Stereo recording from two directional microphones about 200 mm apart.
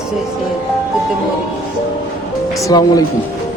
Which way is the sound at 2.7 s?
20° left (ahead or behind).